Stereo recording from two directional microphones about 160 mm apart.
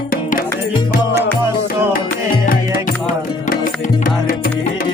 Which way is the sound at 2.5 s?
60° left (ahead or behind).